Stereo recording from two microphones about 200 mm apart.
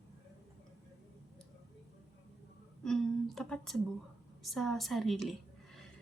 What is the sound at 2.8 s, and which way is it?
Speech, centre (ahead or behind).